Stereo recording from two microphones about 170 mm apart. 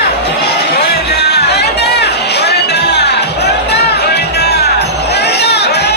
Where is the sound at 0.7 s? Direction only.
75° left (ahead or behind).